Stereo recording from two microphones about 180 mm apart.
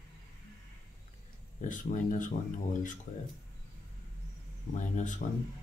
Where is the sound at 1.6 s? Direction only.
45° left (ahead or behind).